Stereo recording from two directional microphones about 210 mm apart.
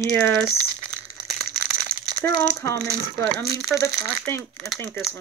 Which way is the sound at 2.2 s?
15° left (ahead or behind).